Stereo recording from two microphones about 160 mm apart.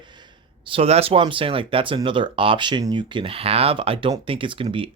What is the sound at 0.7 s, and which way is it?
Speech, 40° right (ahead or behind).